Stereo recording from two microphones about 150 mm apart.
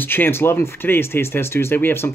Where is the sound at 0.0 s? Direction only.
15° left (ahead or behind).